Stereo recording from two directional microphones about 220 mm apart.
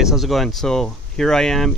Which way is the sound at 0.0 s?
Centre (ahead or behind).